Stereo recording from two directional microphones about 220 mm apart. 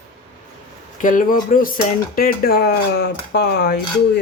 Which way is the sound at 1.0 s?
40° left (ahead or behind).